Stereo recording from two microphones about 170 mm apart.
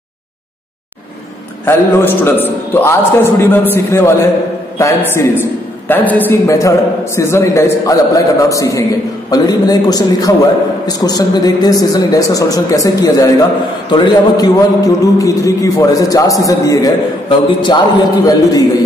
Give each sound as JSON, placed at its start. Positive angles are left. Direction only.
{"t": 1.7, "sound": "a man's voice", "side_deg": 15}